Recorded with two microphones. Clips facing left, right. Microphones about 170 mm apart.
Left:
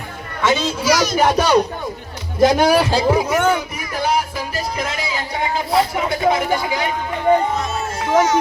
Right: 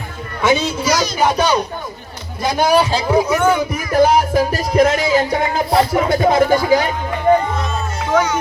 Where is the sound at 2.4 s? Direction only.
90° left.